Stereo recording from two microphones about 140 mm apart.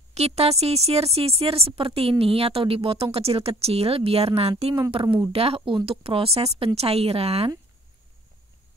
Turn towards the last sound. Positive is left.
turn(degrees=-45)  # may be behind; listen again after turning